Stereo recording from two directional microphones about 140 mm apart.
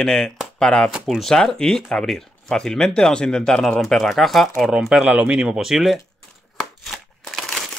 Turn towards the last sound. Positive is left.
turn(degrees=0)  # may be behind; listen again after turning